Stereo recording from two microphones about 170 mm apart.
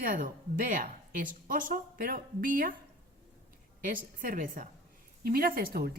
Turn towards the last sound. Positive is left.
turn(degrees=-65)  # may be behind; listen again after turning